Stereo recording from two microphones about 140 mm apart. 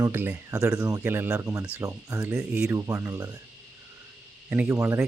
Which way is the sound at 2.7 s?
20° right (ahead or behind).